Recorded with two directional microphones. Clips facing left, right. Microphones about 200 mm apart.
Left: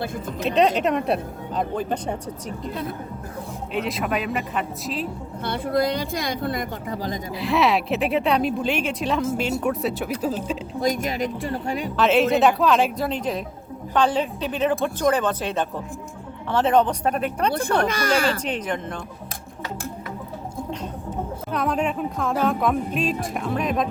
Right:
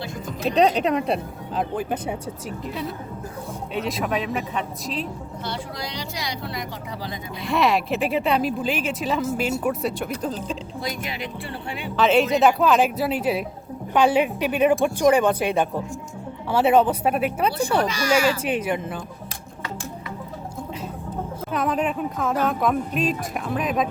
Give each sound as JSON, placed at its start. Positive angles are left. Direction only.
{"t": 0.4, "sound": "speech", "side_deg": 0}
{"t": 3.8, "sound": "speech", "side_deg": 0}
{"t": 5.5, "sound": "speech", "side_deg": 55}
{"t": 7.4, "sound": "speech", "side_deg": 0}
{"t": 10.8, "sound": "speech", "side_deg": 45}
{"t": 11.9, "sound": "speech", "side_deg": 0}
{"t": 17.8, "sound": "speech", "side_deg": 55}
{"t": 18.4, "sound": "speech", "side_deg": -10}
{"t": 21.5, "sound": "speech", "side_deg": 0}